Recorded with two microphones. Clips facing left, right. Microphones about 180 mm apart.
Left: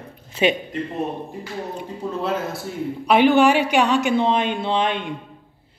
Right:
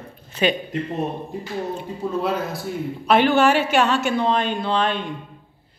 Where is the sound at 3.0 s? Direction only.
15° left (ahead or behind).